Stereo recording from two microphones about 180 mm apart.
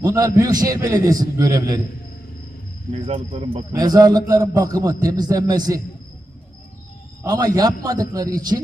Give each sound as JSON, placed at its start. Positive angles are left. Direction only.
{"t": 0.0, "sound": "a man's voice", "side_deg": -20}
{"t": 3.1, "sound": "speech", "side_deg": -35}
{"t": 3.7, "sound": "a man's voice", "side_deg": -20}
{"t": 7.3, "sound": "a man's voice", "side_deg": -20}